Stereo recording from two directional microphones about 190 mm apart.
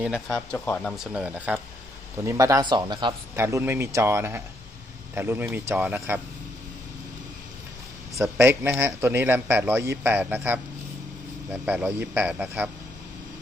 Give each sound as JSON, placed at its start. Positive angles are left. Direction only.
{"t": 0.3, "sound": "speech", "side_deg": 5}
{"t": 2.2, "sound": "a man's voice", "side_deg": -15}
{"t": 8.1, "sound": "a man's voice", "side_deg": -15}
{"t": 11.6, "sound": "a man's voice", "side_deg": -10}